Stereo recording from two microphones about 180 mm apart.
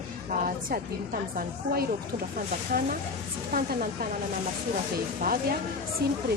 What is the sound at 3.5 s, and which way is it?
Speech, 55° right (ahead or behind).